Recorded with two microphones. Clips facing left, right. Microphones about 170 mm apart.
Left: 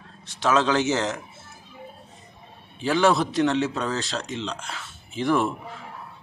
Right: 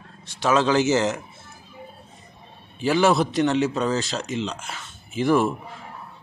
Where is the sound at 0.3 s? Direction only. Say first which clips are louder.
Right 2 dB; centre (ahead or behind).